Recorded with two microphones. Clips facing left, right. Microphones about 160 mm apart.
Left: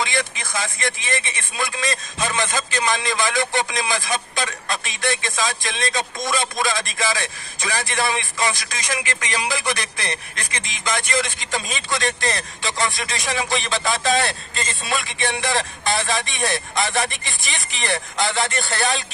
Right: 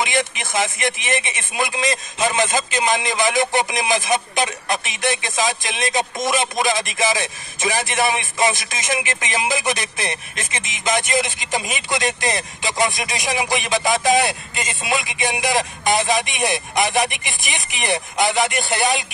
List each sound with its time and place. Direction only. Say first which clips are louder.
0.0 s a man's voice: right 3 dB; 20° right (ahead or behind)